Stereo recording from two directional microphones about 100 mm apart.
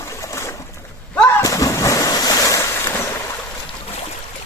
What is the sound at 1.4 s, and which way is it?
Waves, 35° left (ahead or behind).